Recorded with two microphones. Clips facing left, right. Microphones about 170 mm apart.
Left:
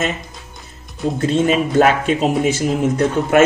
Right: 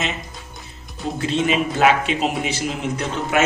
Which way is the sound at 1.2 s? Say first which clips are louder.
Left 4 dB; 45° left (ahead or behind).